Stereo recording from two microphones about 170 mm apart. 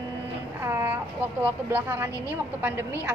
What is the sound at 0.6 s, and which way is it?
A woman's voice, 15° right (ahead or behind).